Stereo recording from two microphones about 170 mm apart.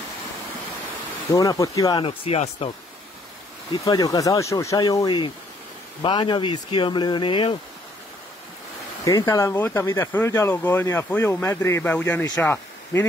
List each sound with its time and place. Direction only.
1.3 s speech: 20° left (ahead or behind); by 2.7 s 40° left (ahead or behind)
3.8 s speech: 20° left (ahead or behind)
9.0 s speech: 20° left (ahead or behind)